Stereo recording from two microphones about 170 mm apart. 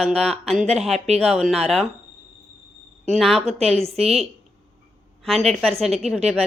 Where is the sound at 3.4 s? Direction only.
35° right (ahead or behind).